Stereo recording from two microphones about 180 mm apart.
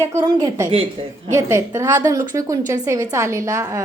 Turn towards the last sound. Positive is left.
turn(degrees=-15)  # may be behind; listen again after turning